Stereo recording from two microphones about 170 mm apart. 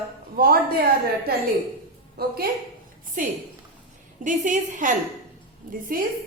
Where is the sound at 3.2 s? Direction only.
50° right (ahead or behind).